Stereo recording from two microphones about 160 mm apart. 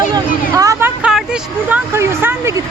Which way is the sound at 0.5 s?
20° right (ahead or behind).